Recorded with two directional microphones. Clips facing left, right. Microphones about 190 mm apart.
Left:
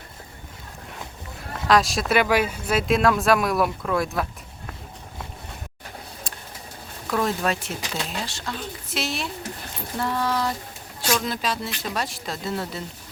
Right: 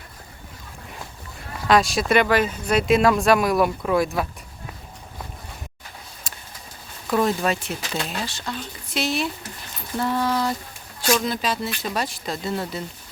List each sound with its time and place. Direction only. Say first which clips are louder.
1.6 s speech: right 1 dB; centre (ahead or behind)
6.3 s a sound: left 2 dB; 5° right (ahead or behind)
7.1 s speech: right 3 dB; centre (ahead or behind)